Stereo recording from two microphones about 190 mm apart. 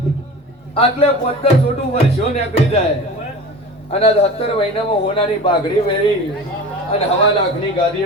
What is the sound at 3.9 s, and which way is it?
A man's voice, 35° left (ahead or behind).